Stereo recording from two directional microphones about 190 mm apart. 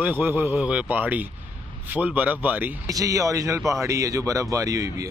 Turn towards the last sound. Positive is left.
turn(degrees=-15)  # may be behind; listen again after turning